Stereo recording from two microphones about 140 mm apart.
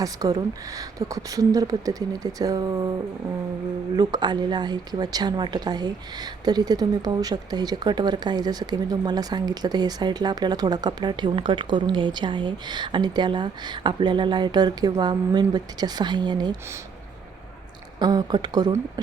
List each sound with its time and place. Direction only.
0.0 s a woman's voice: 25° right (ahead or behind)
3.9 s speech: 30° right (ahead or behind)
18.0 s a woman's voice: 30° right (ahead or behind)